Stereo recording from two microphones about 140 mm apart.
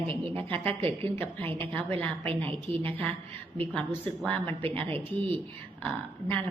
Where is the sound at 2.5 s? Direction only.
40° right (ahead or behind).